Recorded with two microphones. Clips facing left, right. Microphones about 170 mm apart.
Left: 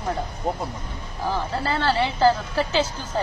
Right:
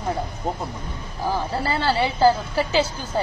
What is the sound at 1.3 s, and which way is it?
A woman's voice, 10° right (ahead or behind).